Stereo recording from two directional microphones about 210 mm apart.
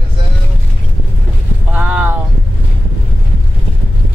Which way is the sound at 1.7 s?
5° right (ahead or behind).